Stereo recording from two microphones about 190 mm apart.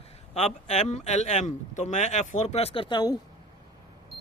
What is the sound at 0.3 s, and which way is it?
Speech, 35° left (ahead or behind).